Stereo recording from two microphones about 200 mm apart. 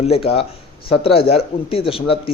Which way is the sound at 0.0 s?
30° left (ahead or behind).